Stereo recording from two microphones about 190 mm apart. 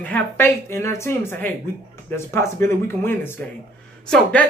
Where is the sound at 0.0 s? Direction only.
10° left (ahead or behind).